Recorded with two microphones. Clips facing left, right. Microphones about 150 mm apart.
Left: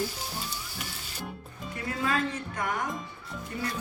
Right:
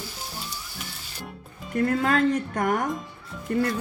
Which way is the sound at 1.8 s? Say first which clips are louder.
Right 8 dB; 55° right (ahead or behind).